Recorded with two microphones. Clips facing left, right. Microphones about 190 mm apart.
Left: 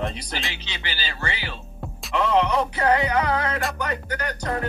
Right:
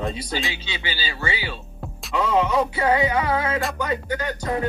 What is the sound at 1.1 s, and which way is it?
Speech, 10° right (ahead or behind).